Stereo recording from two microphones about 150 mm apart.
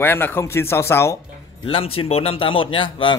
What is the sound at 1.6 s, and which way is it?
Speech, 40° left (ahead or behind).